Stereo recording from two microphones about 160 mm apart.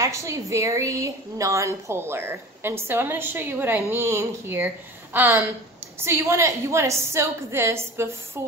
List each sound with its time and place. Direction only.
0.0 s a woman's voice: 20° right (ahead or behind)